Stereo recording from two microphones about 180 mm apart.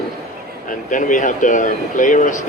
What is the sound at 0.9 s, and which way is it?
Speech, 45° left (ahead or behind).